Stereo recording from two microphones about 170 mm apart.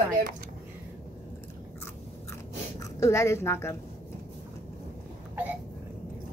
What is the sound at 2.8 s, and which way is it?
Speech, 20° left (ahead or behind).